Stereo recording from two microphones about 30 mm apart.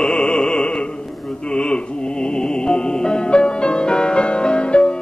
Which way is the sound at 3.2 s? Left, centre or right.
Left.